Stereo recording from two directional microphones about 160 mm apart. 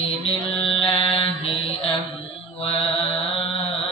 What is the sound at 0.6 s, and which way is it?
Mantra, 35° left (ahead or behind).